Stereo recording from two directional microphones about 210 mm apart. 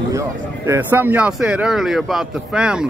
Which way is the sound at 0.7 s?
10° right (ahead or behind).